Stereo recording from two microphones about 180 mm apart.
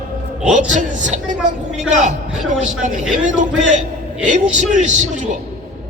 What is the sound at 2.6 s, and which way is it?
A man's voice, 45° right (ahead or behind).